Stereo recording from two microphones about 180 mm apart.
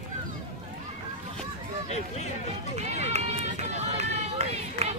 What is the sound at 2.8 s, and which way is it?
Run, 40° right (ahead or behind).